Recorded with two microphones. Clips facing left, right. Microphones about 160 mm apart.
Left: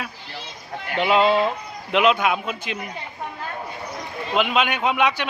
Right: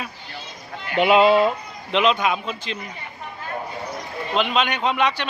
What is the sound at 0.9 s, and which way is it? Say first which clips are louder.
Speech: right 3 dB; 15° right (ahead or behind).